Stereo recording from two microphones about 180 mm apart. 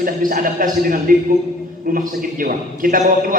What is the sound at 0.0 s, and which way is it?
A man's voice, 50° right (ahead or behind).